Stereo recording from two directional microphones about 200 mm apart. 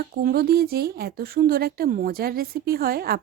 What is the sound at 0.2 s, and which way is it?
Speech, 50° right (ahead or behind).